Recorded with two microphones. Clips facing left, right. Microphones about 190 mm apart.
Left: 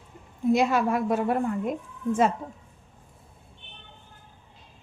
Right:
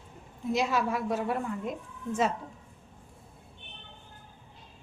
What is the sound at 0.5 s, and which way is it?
A woman's voice, 55° left (ahead or behind).